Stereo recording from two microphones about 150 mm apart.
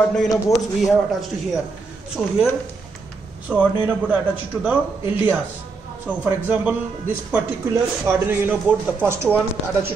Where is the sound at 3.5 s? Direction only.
5° right (ahead or behind).